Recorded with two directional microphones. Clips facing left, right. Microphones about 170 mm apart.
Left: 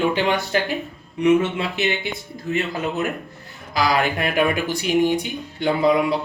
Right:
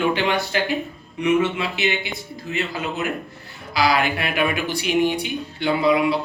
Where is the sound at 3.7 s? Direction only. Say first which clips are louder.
Even; 45° left (ahead or behind).